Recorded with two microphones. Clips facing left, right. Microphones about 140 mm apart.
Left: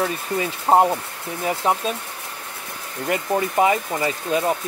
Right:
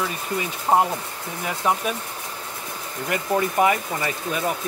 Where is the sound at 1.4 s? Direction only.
25° left (ahead or behind).